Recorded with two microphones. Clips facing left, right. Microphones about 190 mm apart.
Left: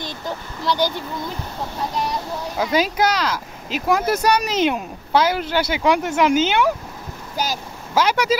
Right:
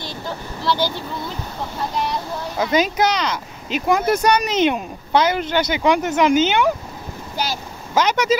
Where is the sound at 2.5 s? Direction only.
5° left (ahead or behind).